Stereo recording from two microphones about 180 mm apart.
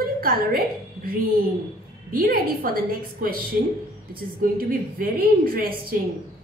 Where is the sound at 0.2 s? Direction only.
55° right (ahead or behind).